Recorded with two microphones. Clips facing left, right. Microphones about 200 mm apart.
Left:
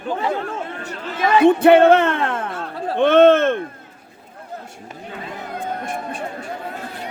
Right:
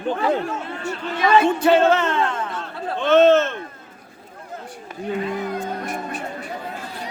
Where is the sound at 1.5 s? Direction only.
60° left (ahead or behind).